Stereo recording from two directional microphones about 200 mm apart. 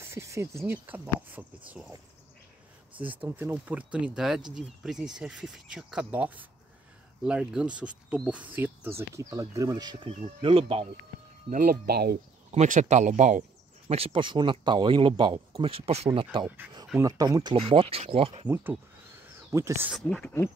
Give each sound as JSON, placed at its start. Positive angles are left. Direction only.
{"t": 0.0, "sound": "speech", "side_deg": -15}
{"t": 3.0, "sound": "speech", "side_deg": -10}
{"t": 11.5, "sound": "speech", "side_deg": -45}
{"t": 12.5, "sound": "speech", "side_deg": -40}
{"t": 18.5, "sound": "speech", "side_deg": -10}
{"t": 19.9, "sound": "speech", "side_deg": 0}